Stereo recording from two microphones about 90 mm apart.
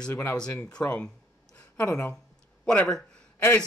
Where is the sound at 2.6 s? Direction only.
10° left (ahead or behind).